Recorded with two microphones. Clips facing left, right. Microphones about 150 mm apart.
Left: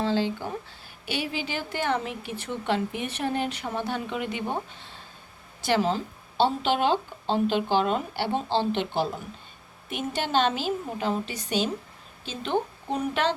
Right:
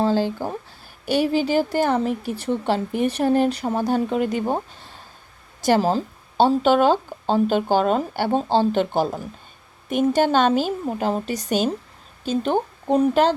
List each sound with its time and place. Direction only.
0.0 s a woman's voice: 45° right (ahead or behind)
5.6 s speech: 40° right (ahead or behind)